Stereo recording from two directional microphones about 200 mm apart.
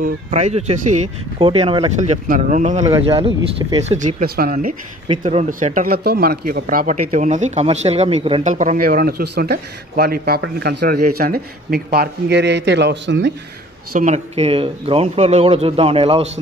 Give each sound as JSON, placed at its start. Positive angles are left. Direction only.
{"t": 0.0, "sound": "a man's voice", "side_deg": -35}
{"t": 4.2, "sound": "speech", "side_deg": -45}
{"t": 13.9, "sound": "a man's voice", "side_deg": -35}